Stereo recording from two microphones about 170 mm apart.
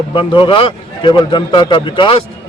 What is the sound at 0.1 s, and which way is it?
A man's voice, 30° left (ahead or behind).